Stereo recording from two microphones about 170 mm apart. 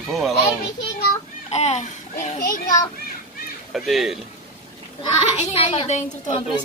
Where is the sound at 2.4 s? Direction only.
55° left (ahead or behind).